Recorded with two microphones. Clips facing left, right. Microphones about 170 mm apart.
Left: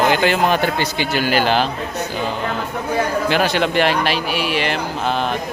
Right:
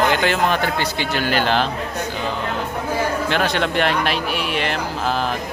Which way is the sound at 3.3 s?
5° left (ahead or behind).